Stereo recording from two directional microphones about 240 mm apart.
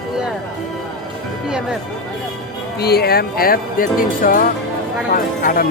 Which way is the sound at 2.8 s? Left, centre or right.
Left.